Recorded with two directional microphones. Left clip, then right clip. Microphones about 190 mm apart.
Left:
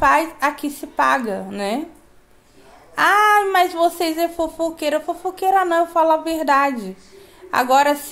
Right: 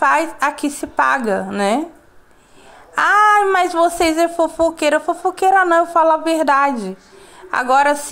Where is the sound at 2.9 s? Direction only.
20° right (ahead or behind).